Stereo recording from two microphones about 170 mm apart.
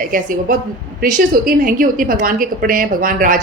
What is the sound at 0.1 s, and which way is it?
A woman's voice, 50° right (ahead or behind).